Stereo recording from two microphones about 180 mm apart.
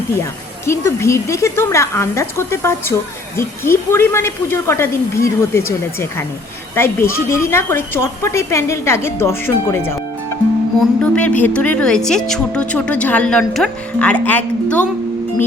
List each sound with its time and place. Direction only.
0.6 s a woman's voice: 15° left (ahead or behind)